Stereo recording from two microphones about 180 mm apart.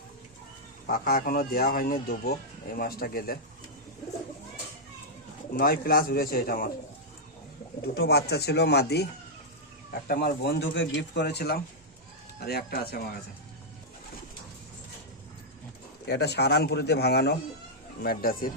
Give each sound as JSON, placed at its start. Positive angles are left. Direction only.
{"t": 0.9, "sound": "speech", "side_deg": 55}
{"t": 5.5, "sound": "speech", "side_deg": 55}
{"t": 7.9, "sound": "speech", "side_deg": 60}
{"t": 16.0, "sound": "speech", "side_deg": 65}
{"t": 18.0, "sound": "speech", "side_deg": 55}